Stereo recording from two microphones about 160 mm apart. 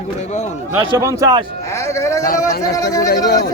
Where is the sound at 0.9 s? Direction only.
20° right (ahead or behind).